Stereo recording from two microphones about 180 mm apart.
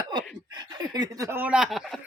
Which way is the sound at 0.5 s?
25° right (ahead or behind).